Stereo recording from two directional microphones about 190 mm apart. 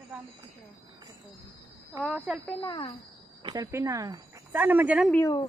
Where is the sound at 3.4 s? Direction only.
25° right (ahead or behind); by 5.1 s 5° right (ahead or behind).